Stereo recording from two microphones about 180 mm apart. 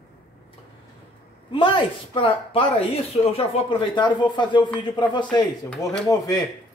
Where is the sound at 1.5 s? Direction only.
30° left (ahead or behind).